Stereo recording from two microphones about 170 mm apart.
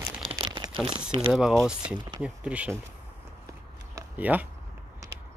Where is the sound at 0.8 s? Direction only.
30° right (ahead or behind).